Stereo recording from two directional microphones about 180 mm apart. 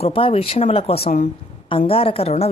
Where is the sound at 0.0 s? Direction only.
30° left (ahead or behind).